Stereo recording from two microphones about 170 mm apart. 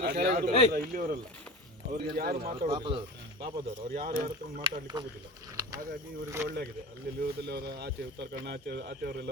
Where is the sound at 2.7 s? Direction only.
30° right (ahead or behind).